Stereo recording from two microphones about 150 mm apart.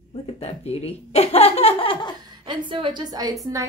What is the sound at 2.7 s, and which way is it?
Speech, 30° right (ahead or behind).